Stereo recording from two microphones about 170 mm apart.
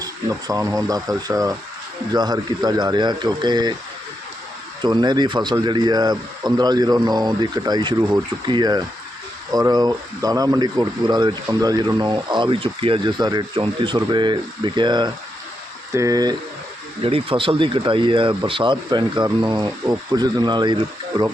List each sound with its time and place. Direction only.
0.0 s speech: 20° right (ahead or behind)
4.8 s speech: 25° right (ahead or behind)
17.0 s speech: 35° right (ahead or behind)